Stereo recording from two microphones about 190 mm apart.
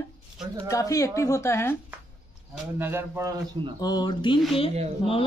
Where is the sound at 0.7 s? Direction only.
15° left (ahead or behind).